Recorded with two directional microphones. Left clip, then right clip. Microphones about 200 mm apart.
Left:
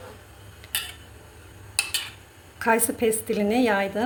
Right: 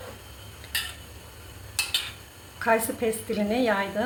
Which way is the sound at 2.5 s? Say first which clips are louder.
Left 1 dB; 50° left (ahead or behind).